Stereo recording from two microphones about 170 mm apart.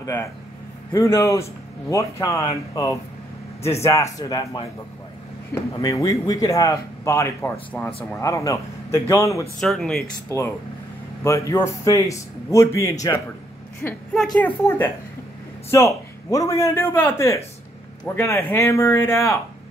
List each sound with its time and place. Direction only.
0.0 s a man's voice: 15° left (ahead or behind)
9.6 s speech: centre (ahead or behind)
11.2 s a man's voice: 20° left (ahead or behind); by 14.5 s centre (ahead or behind)
15.7 s a man's voice: 15° left (ahead or behind)